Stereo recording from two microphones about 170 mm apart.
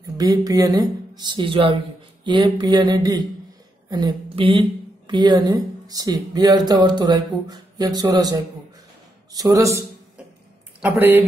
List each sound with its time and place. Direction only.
0.2 s speech: 20° right (ahead or behind)
10.9 s speech: 10° right (ahead or behind)